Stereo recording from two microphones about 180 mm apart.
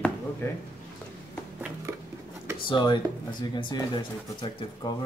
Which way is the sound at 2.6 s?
25° left (ahead or behind).